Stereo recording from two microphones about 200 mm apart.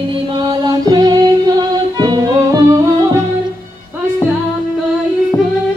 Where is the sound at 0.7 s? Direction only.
20° right (ahead or behind).